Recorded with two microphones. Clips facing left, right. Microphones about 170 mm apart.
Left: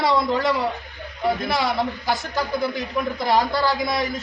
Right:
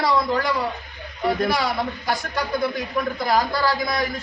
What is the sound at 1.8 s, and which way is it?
Speech, centre (ahead or behind).